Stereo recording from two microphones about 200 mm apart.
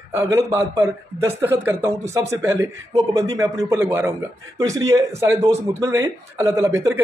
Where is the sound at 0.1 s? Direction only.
10° right (ahead or behind).